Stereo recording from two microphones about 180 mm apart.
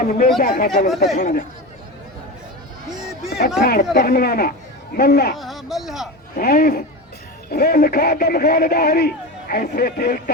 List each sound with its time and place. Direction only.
0.0 s speech: 50° left (ahead or behind)
3.6 s speech: 60° left (ahead or behind)
5.4 s speech: centre (ahead or behind)
6.3 s speech: 50° left (ahead or behind)